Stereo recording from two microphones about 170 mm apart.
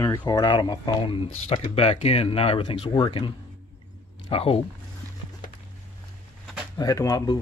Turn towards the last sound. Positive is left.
turn(degrees=20)  # may be behind; listen again after turning